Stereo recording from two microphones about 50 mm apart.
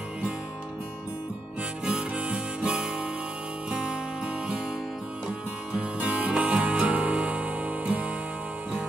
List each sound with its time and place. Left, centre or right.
1.9 s guitar: right
5.8 s music: right